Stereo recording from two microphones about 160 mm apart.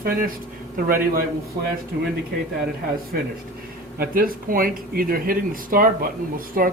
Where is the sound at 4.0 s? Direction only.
65° right (ahead or behind).